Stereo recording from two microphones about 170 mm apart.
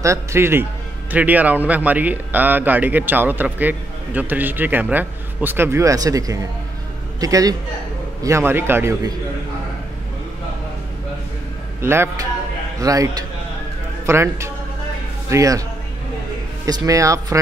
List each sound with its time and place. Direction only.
0.0 s a man's voice: 15° right (ahead or behind)
11.8 s a man's voice: 15° right (ahead or behind)
16.6 s speech: 20° right (ahead or behind)